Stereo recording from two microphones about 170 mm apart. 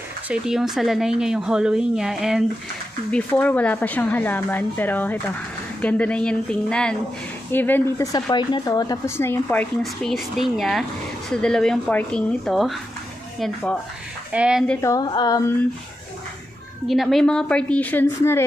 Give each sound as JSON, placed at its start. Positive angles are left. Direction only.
{"t": 0.3, "sound": "speech", "side_deg": -5}
{"t": 8.1, "sound": "speech", "side_deg": 25}
{"t": 10.1, "sound": "speech", "side_deg": 0}
{"t": 14.3, "sound": "speech", "side_deg": -5}
{"t": 14.8, "sound": "speech", "side_deg": 20}
{"t": 16.8, "sound": "speech", "side_deg": 0}